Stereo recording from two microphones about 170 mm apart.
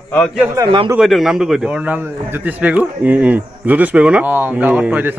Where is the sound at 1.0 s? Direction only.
Centre (ahead or behind).